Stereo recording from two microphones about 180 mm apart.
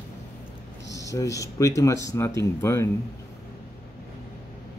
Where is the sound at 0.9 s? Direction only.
15° left (ahead or behind).